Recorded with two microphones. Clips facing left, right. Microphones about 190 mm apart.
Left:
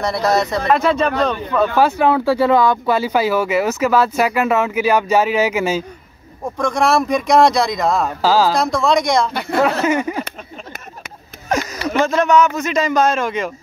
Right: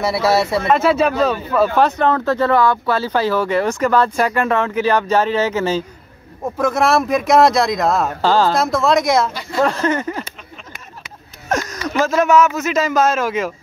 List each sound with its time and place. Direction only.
0.0 s speech: 5° right (ahead or behind)
1.9 s speech: 10° left (ahead or behind)
6.4 s speech: 5° right (ahead or behind)
9.3 s speech: 60° left (ahead or behind)
9.8 s speech: 10° left (ahead or behind)
11.4 s speech: centre (ahead or behind)